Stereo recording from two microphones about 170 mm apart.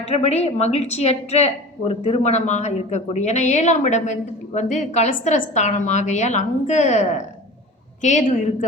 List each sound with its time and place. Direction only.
0.1 s speech: 40° left (ahead or behind)
8.0 s speech: 45° left (ahead or behind)